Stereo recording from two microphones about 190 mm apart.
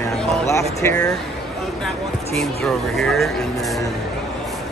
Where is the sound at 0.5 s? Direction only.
15° left (ahead or behind).